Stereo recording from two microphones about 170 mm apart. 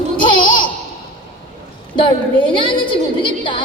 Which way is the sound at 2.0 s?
30° left (ahead or behind).